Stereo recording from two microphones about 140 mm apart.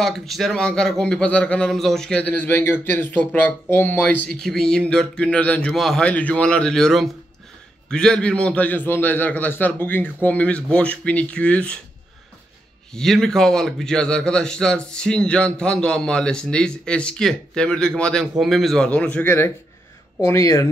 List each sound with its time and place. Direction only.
0.0 s a man's voice: centre (ahead or behind)
12.9 s a man's voice: 5° left (ahead or behind); by 20.6 s 20° left (ahead or behind)